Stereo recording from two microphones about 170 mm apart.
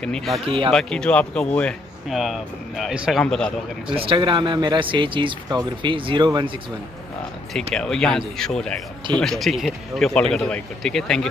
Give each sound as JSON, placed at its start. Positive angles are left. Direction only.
{"t": 0.0, "sound": "speech", "side_deg": 5}
{"t": 3.9, "sound": "speech", "side_deg": -30}
{"t": 7.7, "sound": "speech", "side_deg": 5}